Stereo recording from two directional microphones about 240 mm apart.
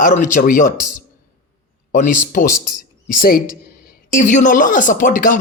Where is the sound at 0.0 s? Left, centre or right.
Left.